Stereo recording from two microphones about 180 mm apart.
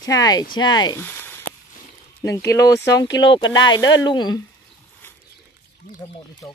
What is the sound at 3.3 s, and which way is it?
Speech, 25° left (ahead or behind).